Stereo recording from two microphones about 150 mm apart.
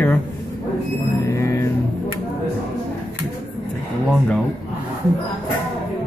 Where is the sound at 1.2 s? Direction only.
20° left (ahead or behind).